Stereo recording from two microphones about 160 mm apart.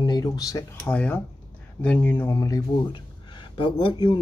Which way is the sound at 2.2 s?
20° left (ahead or behind).